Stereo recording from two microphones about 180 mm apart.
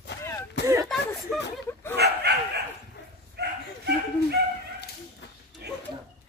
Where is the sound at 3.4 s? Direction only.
70° right (ahead or behind).